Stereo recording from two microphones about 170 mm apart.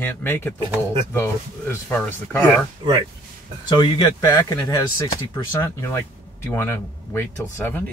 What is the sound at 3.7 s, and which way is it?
Speech, 25° left (ahead or behind).